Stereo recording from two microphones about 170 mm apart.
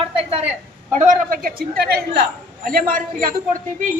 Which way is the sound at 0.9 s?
45° right (ahead or behind).